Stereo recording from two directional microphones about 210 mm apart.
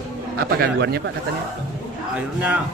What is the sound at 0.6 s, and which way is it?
Speech, 50° right (ahead or behind).